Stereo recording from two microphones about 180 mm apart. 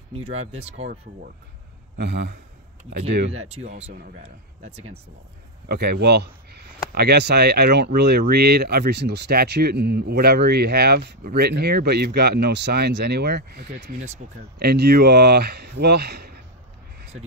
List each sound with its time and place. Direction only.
0.1 s speech: 35° right (ahead or behind)
2.0 s a man's voice: 65° right (ahead or behind)
3.3 s speech: 35° right (ahead or behind)
5.7 s speech: 65° right (ahead or behind)
13.9 s speech: 40° right (ahead or behind)
14.6 s speech: 65° right (ahead or behind)